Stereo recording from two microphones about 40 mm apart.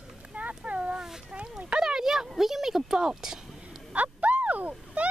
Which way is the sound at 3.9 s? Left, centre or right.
Right.